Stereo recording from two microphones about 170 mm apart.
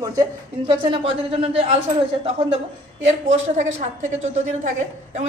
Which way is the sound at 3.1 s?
45° right (ahead or behind).